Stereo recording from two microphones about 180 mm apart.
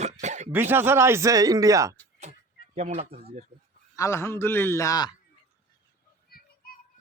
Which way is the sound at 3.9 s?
15° left (ahead or behind).